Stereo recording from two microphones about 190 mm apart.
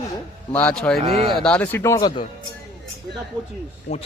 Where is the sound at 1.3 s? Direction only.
5° left (ahead or behind).